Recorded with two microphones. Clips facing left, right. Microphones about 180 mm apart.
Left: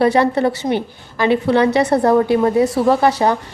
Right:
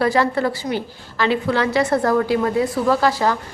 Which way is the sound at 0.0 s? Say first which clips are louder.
Left 4 dB; 20° left (ahead or behind).